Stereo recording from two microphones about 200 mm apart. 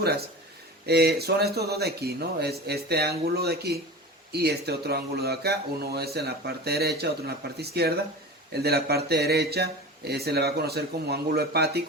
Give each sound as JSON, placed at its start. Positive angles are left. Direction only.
{"t": 0.9, "sound": "speech", "side_deg": -55}